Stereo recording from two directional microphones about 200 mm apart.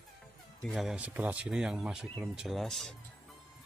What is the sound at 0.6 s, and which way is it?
Speech, centre (ahead or behind).